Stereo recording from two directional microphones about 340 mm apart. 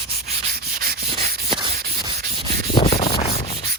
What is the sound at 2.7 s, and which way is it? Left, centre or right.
Sanding, centre.